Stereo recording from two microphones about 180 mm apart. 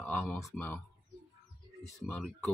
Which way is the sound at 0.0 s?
10° left (ahead or behind).